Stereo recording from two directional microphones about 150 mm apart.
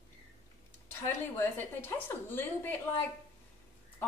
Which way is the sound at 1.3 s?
15° left (ahead or behind).